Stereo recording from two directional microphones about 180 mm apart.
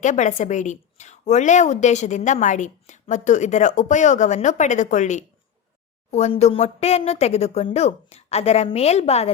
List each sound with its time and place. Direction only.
0.0 s a woman's voice: 40° left (ahead or behind)